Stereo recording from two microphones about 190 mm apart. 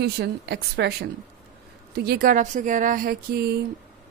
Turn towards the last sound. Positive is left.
turn(degrees=-55)  # may be behind; listen again after turning